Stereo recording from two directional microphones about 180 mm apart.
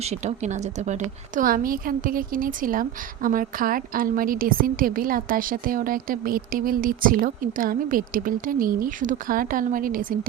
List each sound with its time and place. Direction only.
0.0 s a woman's voice: 35° right (ahead or behind)